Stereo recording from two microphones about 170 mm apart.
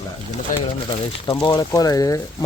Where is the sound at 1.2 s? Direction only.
30° left (ahead or behind).